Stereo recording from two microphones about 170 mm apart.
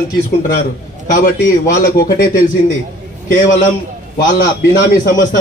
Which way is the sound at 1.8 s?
55° left (ahead or behind).